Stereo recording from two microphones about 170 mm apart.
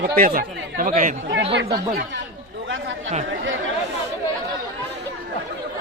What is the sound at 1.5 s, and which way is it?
Speech, 75° right (ahead or behind).